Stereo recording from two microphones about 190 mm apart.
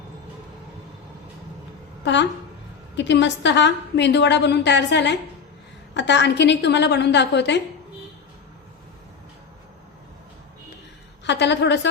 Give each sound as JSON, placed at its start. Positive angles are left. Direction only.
{"t": 2.9, "sound": "a woman's voice", "side_deg": 70}
{"t": 11.3, "sound": "a woman's voice", "side_deg": 65}